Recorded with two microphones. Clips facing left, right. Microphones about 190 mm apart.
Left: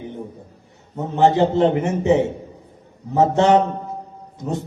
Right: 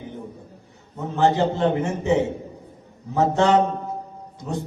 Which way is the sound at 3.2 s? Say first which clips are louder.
Left 3 dB; 20° left (ahead or behind).